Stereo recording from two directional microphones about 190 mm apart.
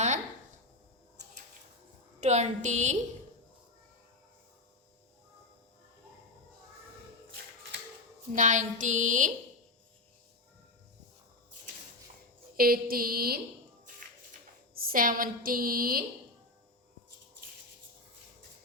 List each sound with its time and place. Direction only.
2.2 s a woman's voice: 35° right (ahead or behind)
8.3 s a woman's voice: 40° right (ahead or behind)
12.5 s a woman's voice: 50° right (ahead or behind)
14.8 s a woman's voice: 50° right (ahead or behind)